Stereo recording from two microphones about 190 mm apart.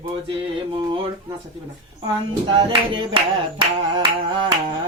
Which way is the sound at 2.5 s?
25° right (ahead or behind).